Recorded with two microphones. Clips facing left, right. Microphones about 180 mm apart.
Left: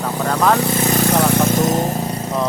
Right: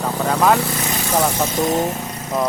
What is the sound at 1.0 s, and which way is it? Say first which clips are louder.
Speech: left 2 dB; 60° left (ahead or behind).